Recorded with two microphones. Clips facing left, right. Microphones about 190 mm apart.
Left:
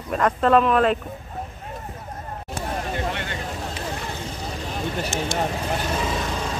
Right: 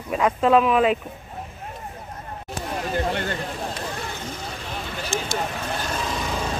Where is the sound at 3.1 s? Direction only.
40° right (ahead or behind).